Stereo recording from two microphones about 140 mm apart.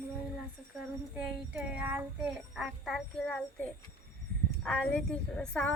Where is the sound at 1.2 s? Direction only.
10° right (ahead or behind).